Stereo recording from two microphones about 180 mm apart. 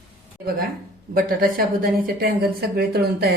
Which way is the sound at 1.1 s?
55° right (ahead or behind).